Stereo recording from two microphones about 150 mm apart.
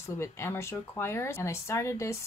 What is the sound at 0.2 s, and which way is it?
Speech, 15° left (ahead or behind).